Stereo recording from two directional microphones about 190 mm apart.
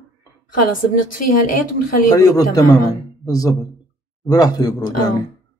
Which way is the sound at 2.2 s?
20° left (ahead or behind).